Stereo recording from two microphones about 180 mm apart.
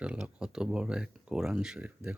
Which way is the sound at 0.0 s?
5° right (ahead or behind).